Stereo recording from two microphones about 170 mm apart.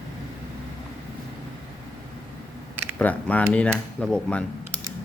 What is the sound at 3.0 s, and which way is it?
A woman's voice, 10° left (ahead or behind).